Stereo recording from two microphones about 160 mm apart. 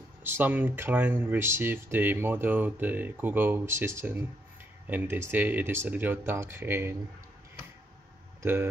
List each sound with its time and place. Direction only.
0.2 s speech: 10° right (ahead or behind)
8.4 s speech: 15° right (ahead or behind)